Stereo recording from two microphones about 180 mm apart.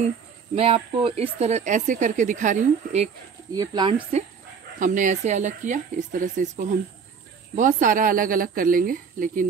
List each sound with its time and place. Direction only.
0.6 s speech: 30° right (ahead or behind)
3.5 s speech: 25° right (ahead or behind)
4.1 s speech: 35° right (ahead or behind)